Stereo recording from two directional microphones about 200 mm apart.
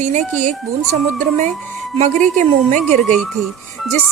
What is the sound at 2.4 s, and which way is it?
Speech, 35° right (ahead or behind).